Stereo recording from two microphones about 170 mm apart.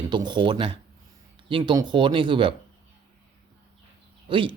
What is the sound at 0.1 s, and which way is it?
Speech, 25° right (ahead or behind).